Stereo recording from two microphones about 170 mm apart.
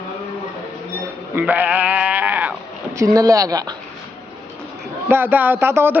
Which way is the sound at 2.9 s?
20° right (ahead or behind).